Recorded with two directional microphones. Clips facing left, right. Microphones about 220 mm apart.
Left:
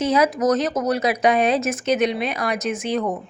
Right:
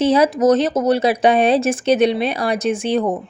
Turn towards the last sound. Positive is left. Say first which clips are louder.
# right 5 dB
turn(degrees=-30)  # may be behind; listen again after turning